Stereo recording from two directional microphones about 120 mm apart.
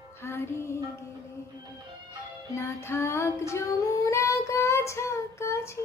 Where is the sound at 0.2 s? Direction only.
20° left (ahead or behind).